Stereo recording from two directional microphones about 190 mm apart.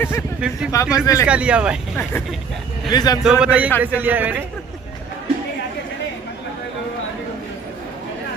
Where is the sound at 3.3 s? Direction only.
5° right (ahead or behind).